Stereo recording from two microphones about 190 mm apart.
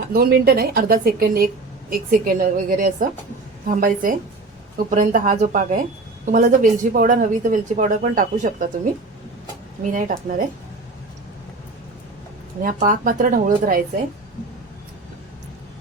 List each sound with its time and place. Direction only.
0.1 s speech: 50° right (ahead or behind)
9.8 s speech: 45° right (ahead or behind)
12.6 s speech: 45° right (ahead or behind)